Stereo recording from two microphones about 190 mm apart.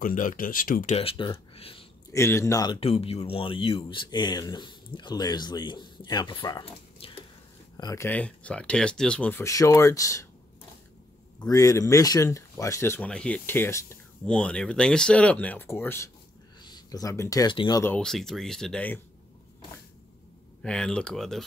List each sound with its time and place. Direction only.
0.0 s speech: 45° left (ahead or behind)
0.9 s speech: 25° left (ahead or behind)
2.1 s speech: 15° left (ahead or behind)
2.8 s speech: 30° left (ahead or behind); by 10.2 s 15° left (ahead or behind)
11.3 s speech: 20° left (ahead or behind)
17.8 s speech: 5° left (ahead or behind)
20.6 s speech: 5° left (ahead or behind)